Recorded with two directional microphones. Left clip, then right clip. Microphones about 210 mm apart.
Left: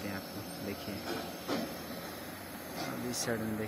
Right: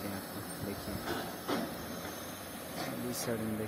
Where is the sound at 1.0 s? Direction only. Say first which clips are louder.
Right 1 dB; 20° left (ahead or behind).